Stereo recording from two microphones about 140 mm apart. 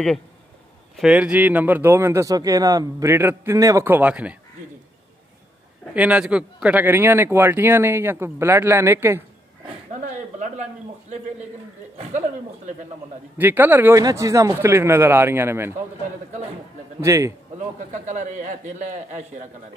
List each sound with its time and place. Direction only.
0.9 s a man's voice: 5° right (ahead or behind)
5.9 s a man's voice: 10° right (ahead or behind)
10.4 s a man's voice: 55° right (ahead or behind)
13.4 s a man's voice: 15° right (ahead or behind)
17.0 s a man's voice: 20° right (ahead or behind)
17.9 s a man's voice: 60° right (ahead or behind)